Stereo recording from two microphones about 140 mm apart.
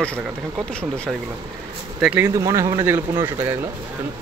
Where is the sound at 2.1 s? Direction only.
20° right (ahead or behind).